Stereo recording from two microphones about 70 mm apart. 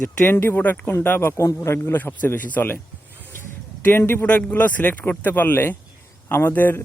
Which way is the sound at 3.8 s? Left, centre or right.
Left.